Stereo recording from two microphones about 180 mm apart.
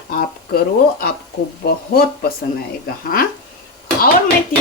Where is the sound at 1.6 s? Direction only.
60° left (ahead or behind).